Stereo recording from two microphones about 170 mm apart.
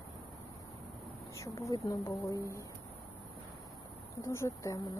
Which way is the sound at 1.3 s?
15° left (ahead or behind).